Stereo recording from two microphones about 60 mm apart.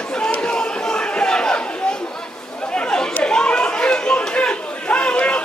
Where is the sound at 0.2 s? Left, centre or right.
Centre.